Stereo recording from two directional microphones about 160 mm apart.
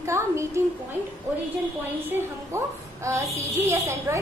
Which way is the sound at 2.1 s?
15° right (ahead or behind).